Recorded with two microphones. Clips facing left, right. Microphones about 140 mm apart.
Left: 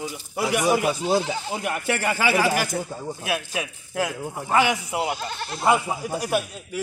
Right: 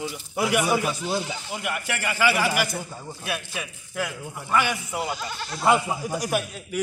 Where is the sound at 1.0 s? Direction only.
60° left (ahead or behind).